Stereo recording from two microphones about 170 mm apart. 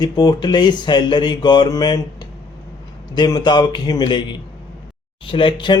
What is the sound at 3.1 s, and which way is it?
Speech, 25° left (ahead or behind).